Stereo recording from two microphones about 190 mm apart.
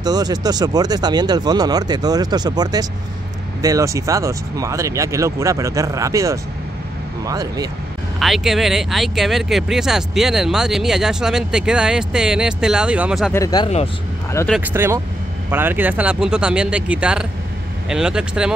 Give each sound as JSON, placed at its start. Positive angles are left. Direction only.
{"t": 0.0, "sound": "speech", "side_deg": -20}
{"t": 8.2, "sound": "speech", "side_deg": 0}
{"t": 13.3, "sound": "speech", "side_deg": 20}
{"t": 14.6, "sound": "speech", "side_deg": -10}